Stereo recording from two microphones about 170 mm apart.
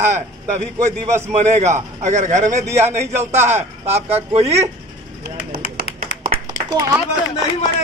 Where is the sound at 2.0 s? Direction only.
45° right (ahead or behind).